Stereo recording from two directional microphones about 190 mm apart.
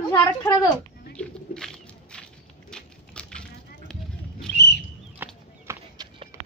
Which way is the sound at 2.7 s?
5° left (ahead or behind).